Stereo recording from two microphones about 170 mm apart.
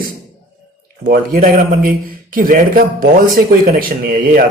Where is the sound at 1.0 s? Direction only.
60° right (ahead or behind).